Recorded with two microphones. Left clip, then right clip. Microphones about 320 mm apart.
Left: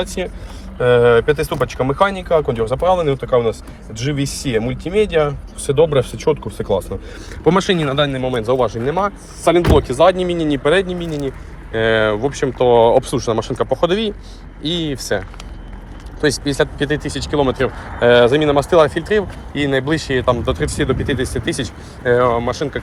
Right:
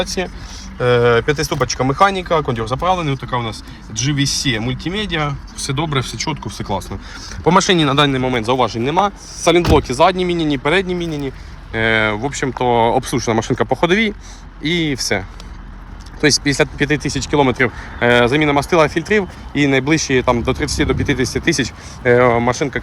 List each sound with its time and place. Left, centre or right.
0.0 s speech: centre
16.2 s speech: right